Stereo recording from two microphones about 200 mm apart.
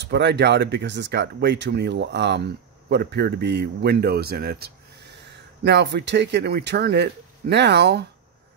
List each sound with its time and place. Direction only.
0.0 s speech: 60° right (ahead or behind)